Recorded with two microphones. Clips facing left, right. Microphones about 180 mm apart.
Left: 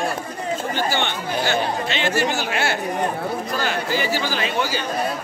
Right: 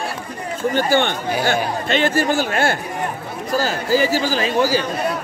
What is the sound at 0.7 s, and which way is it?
Speech, 50° right (ahead or behind).